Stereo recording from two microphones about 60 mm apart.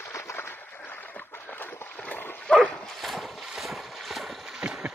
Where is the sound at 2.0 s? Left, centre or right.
Left.